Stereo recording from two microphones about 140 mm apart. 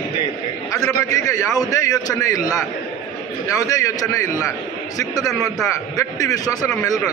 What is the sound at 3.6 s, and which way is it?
A man's voice, 25° left (ahead or behind).